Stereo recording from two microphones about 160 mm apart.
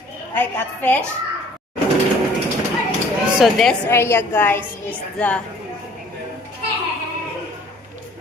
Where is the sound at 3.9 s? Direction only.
15° left (ahead or behind).